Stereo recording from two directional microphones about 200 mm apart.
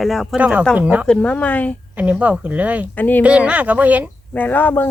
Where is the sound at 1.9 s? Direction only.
5° right (ahead or behind).